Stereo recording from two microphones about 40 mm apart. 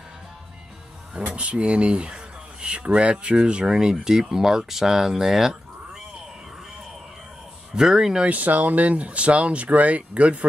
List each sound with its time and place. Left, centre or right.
1.3 s speech: right; by 5.6 s centre
7.7 s speech: centre
8.2 s speech: right